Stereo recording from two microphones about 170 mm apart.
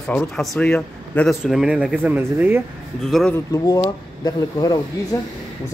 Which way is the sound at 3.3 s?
20° left (ahead or behind).